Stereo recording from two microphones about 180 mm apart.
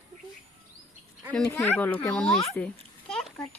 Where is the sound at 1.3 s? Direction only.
10° left (ahead or behind).